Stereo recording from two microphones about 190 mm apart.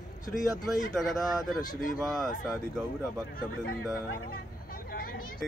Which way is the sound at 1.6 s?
50° left (ahead or behind).